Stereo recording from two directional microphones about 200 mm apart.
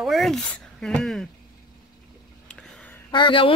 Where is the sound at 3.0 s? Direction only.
25° left (ahead or behind).